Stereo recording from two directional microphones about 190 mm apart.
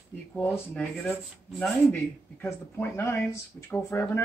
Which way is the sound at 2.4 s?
15° left (ahead or behind).